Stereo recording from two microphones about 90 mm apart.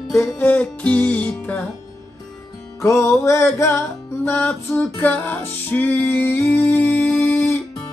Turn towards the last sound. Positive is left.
turn(degrees=20)  # may be behind; listen again after turning